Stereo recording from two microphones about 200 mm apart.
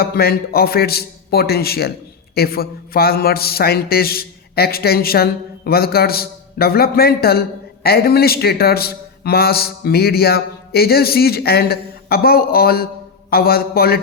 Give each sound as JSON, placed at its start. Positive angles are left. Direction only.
{"t": 0.0, "sound": "a man's voice", "side_deg": 50}